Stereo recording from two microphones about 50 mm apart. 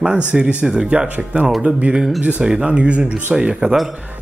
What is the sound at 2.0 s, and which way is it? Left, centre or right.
Speech, centre.